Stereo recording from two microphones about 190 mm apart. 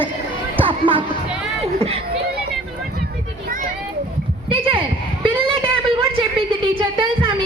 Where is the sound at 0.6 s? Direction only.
25° right (ahead or behind).